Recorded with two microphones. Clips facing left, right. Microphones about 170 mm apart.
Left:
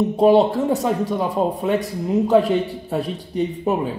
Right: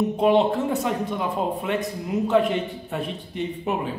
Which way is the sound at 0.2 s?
35° left (ahead or behind).